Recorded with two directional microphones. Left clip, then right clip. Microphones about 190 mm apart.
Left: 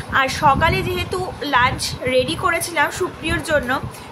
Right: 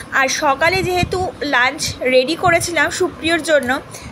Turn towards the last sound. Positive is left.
turn(degrees=-20)  # may be behind; listen again after turning